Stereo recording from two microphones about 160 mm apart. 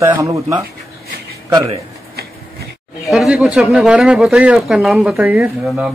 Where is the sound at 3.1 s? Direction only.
5° right (ahead or behind).